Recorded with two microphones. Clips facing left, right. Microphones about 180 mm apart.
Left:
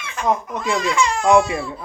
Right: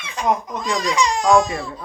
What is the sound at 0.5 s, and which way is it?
Speech, 10° left (ahead or behind).